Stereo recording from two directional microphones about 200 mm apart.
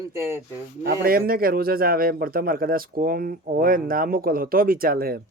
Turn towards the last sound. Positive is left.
turn(degrees=-50)  # may be behind; listen again after turning